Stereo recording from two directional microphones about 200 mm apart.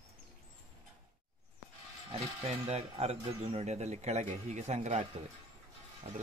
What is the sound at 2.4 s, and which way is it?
Speech, 30° right (ahead or behind).